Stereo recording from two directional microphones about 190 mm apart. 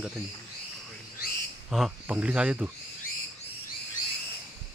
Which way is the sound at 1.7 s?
Centre (ahead or behind).